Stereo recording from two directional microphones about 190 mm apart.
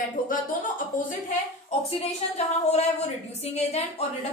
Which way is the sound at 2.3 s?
35° left (ahead or behind).